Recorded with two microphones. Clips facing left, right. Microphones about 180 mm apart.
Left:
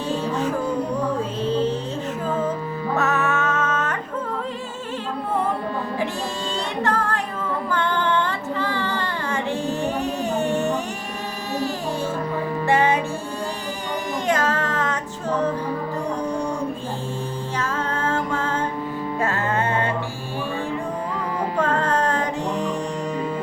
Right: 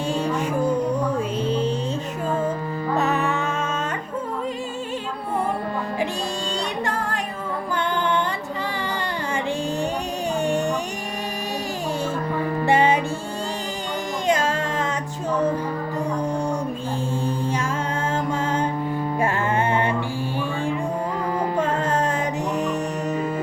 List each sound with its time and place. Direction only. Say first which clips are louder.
1.5 s music: left 3 dB; 15° right (ahead or behind)
3.0 s music: left 1 dB; 15° right (ahead or behind)
7.7 s music: even; 15° right (ahead or behind)
14.3 s music: right 1 dB; 15° right (ahead or behind)
18.1 s music: right 1 dB; 15° right (ahead or behind)
21.8 s music: left 1 dB; 10° right (ahead or behind)